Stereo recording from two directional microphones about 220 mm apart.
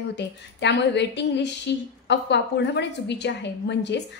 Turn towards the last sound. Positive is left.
turn(degrees=50)  # may be behind; listen again after turning